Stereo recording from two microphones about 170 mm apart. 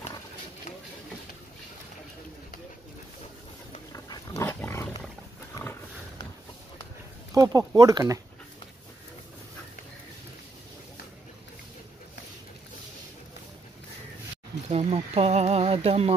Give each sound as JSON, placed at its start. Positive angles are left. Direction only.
{"t": 4.4, "sound": "dog", "side_deg": 10}
{"t": 5.6, "sound": "roaring cats", "side_deg": 15}
{"t": 7.3, "sound": "speech", "side_deg": -20}
{"t": 14.7, "sound": "a sound", "side_deg": -35}